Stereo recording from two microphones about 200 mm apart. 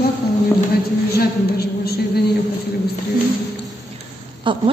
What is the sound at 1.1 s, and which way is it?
A woman's voice, 50° left (ahead or behind).